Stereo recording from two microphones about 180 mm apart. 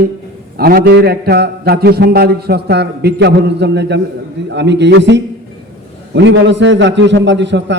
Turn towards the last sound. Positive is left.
turn(degrees=-80)